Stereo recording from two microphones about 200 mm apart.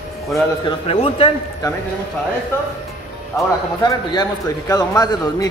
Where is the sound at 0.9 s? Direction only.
30° left (ahead or behind).